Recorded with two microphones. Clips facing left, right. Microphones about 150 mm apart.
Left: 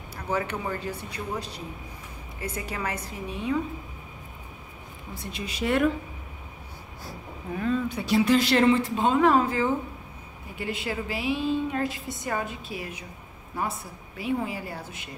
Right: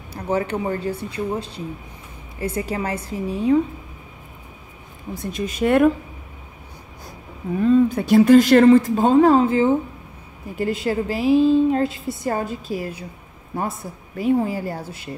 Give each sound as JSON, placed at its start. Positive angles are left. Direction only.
{"t": 0.1, "sound": "a woman's voice", "side_deg": -30}
{"t": 5.1, "sound": "speech", "side_deg": -45}
{"t": 7.1, "sound": "a sound", "side_deg": -20}
{"t": 7.9, "sound": "speech", "side_deg": -50}
{"t": 10.6, "sound": "a woman's voice", "side_deg": -40}
{"t": 14.1, "sound": "a woman's voice", "side_deg": -40}